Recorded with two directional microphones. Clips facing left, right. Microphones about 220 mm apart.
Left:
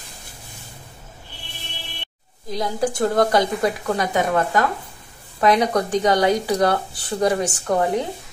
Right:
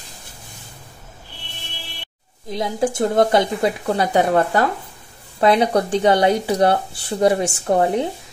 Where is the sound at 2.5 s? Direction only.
25° right (ahead or behind).